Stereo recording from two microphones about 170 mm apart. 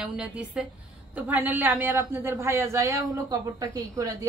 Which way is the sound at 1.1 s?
10° right (ahead or behind).